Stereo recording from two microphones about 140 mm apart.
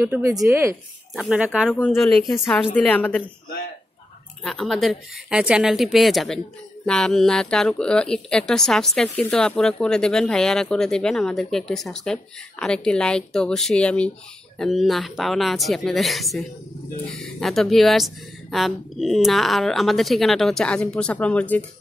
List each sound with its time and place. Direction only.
0.0 s speech: 15° right (ahead or behind)
1.1 s speech: 5° right (ahead or behind)
2.7 s a woman's voice: 10° left (ahead or behind)
4.4 s speech: centre (ahead or behind)